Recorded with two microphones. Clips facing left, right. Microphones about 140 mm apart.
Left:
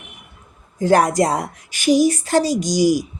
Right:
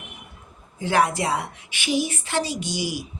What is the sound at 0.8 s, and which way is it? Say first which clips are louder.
Speech: left 6 dB; 40° left (ahead or behind).